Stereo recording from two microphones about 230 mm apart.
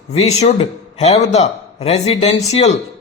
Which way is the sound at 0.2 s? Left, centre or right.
Left.